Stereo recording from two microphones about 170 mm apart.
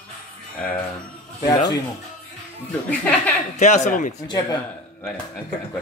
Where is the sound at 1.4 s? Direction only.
25° left (ahead or behind).